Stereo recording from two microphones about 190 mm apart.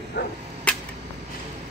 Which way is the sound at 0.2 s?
65° left (ahead or behind).